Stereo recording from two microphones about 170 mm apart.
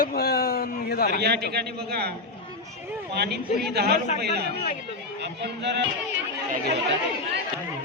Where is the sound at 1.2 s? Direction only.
70° right (ahead or behind).